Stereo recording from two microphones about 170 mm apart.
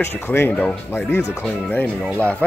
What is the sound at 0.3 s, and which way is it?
Speech, 10° left (ahead or behind).